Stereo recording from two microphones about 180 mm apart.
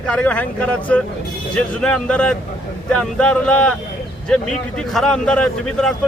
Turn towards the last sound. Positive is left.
turn(degrees=5)  # may be behind; listen again after turning